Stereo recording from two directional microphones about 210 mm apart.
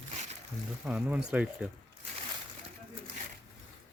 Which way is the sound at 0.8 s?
5° right (ahead or behind).